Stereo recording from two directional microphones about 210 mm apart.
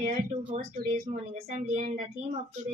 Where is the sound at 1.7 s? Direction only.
35° right (ahead or behind).